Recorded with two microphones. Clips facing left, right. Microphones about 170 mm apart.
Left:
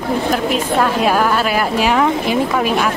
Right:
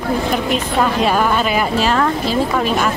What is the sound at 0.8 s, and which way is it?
Speech, 5° left (ahead or behind).